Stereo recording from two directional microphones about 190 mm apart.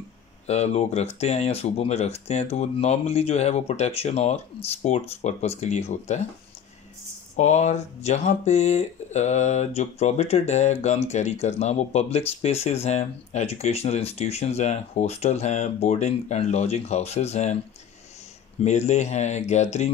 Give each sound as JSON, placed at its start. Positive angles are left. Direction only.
{"t": 0.5, "sound": "speech", "side_deg": 35}
{"t": 7.3, "sound": "speech", "side_deg": 35}
{"t": 18.6, "sound": "speech", "side_deg": 35}